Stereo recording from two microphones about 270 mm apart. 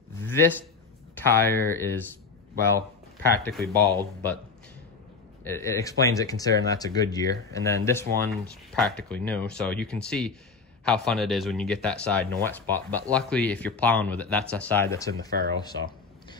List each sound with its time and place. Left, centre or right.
0.2 s a sound: centre
1.1 s speech: centre
3.3 s speech: centre
5.4 s speech: centre
15.2 s speech: right